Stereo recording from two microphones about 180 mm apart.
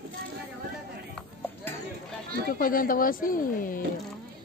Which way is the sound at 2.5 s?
50° left (ahead or behind).